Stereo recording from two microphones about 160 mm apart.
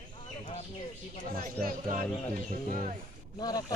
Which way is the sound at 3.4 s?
25° left (ahead or behind).